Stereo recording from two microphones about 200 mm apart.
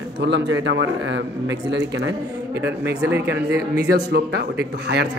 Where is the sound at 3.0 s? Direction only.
10° right (ahead or behind).